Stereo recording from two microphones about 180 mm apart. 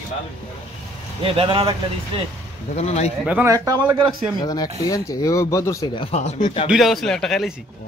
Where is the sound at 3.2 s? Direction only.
5° right (ahead or behind).